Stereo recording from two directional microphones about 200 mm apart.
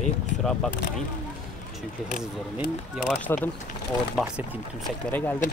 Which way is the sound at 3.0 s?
5° left (ahead or behind).